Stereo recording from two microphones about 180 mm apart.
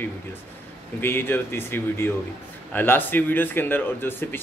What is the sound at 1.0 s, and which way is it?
Speech, 10° left (ahead or behind).